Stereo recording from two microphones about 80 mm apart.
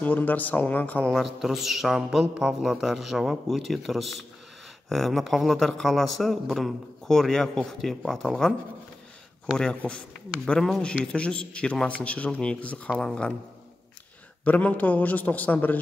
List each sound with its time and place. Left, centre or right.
0.0 s a man's voice: left
1.1 s speech: centre
10.4 s speech: centre
14.4 s a man's voice: centre